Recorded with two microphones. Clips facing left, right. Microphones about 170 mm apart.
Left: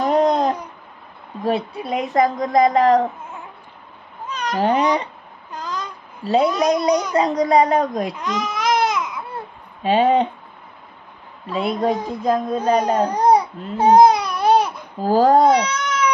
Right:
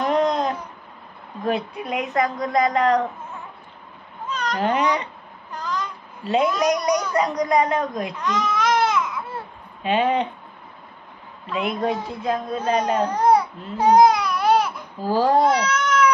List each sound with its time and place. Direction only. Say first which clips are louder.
0.0 s babbling: left 4 dB; 35° left (ahead or behind)
1.4 s a child's voice: left 3 dB; 30° left (ahead or behind)
4.3 s cat: left 1 dB; 10° left (ahead or behind)
4.6 s a child's voice: left 4 dB; 35° left (ahead or behind)
5.6 s a sound: right 1 dB; 15° left (ahead or behind)
6.2 s a child's voice: left 3 dB; 35° left (ahead or behind)
7.0 s a child's voice: left 3 dB; 15° left (ahead or behind)
7.2 s a child's voice: left 4 dB; 30° left (ahead or behind)
8.2 s baby cry: right 1 dB; 10° left (ahead or behind)
9.8 s a child's voice: left 4 dB; 35° left (ahead or behind)
11.4 s a child's voice: left 3 dB; 35° left (ahead or behind)
13.1 s baby cry: left 1 dB; 15° left (ahead or behind)
15.0 s speech: left 4 dB; 45° left (ahead or behind)